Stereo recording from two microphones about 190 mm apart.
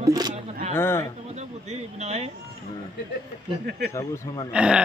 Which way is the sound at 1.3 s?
35° right (ahead or behind).